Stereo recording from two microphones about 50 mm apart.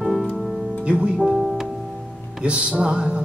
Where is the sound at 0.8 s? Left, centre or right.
Centre.